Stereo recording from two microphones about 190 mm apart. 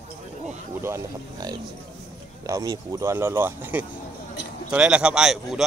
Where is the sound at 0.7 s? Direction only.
15° right (ahead or behind).